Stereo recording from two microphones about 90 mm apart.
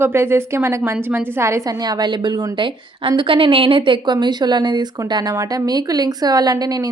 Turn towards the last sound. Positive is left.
turn(degrees=-45)  # may be behind; listen again after turning